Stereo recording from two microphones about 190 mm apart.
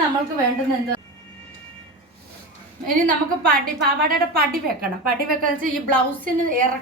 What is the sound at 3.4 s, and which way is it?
A woman's voice, 50° right (ahead or behind).